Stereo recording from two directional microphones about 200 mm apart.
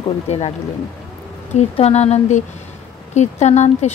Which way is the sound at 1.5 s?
35° left (ahead or behind).